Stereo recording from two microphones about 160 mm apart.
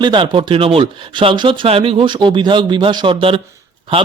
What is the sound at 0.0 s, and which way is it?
Speech, 30° right (ahead or behind).